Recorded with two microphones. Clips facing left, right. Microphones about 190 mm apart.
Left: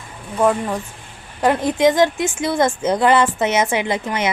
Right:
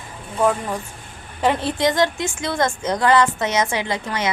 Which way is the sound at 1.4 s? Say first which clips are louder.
Left 4 dB; 10° left (ahead or behind).